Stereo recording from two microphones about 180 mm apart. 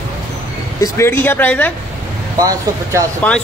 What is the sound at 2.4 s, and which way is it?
Speech, 20° right (ahead or behind).